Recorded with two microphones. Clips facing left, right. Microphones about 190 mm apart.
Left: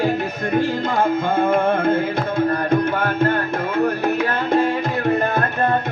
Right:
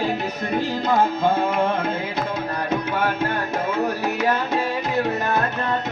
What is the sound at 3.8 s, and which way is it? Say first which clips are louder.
Music: left 2 dB; 55° left (ahead or behind).